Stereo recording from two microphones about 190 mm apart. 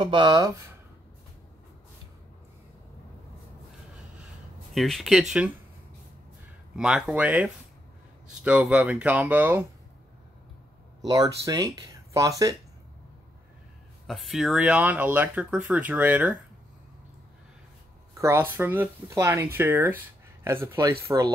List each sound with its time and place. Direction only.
0.0 s speech: 25° right (ahead or behind)
4.7 s speech: centre (ahead or behind)
6.8 s speech: 5° right (ahead or behind)
11.1 s speech: 20° right (ahead or behind)
14.0 s speech: centre (ahead or behind)
18.1 s speech: 15° right (ahead or behind)
20.9 s speech: 25° right (ahead or behind)